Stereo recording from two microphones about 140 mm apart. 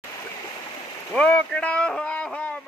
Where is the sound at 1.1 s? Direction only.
10° left (ahead or behind).